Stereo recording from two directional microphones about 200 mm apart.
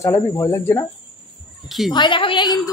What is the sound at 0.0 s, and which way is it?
Speech, 15° left (ahead or behind).